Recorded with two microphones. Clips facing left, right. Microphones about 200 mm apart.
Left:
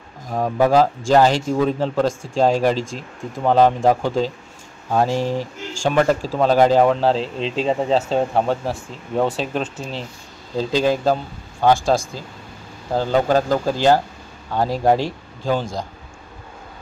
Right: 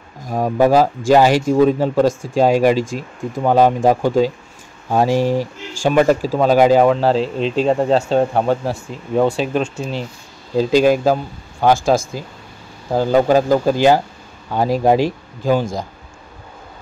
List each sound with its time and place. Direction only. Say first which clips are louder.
0.3 s speech: right 3 dB; 10° right (ahead or behind)
10.6 s speech: right 5 dB; 10° right (ahead or behind)
12.9 s speech: right 4 dB; 10° right (ahead or behind)